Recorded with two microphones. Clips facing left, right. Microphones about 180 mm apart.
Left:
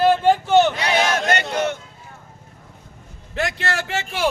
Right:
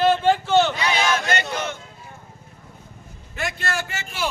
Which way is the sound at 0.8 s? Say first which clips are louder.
Left 2 dB; 65° left (ahead or behind).